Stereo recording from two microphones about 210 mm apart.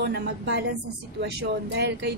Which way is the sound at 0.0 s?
50° right (ahead or behind).